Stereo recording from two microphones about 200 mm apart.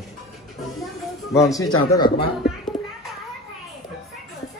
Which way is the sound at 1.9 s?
20° left (ahead or behind).